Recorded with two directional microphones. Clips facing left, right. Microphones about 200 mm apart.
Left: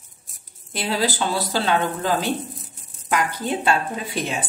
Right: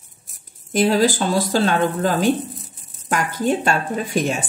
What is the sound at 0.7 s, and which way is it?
Speech, 45° right (ahead or behind).